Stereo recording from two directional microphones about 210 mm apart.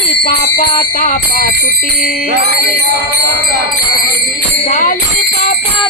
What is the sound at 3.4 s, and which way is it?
Music, 50° right (ahead or behind).